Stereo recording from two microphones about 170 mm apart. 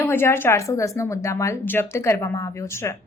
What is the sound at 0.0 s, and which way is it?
A woman's voice, 15° left (ahead or behind).